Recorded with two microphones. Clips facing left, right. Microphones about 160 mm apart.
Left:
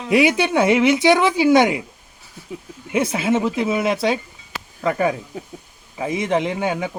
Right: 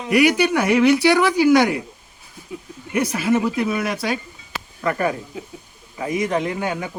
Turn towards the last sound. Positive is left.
turn(degrees=20)  # may be behind; listen again after turning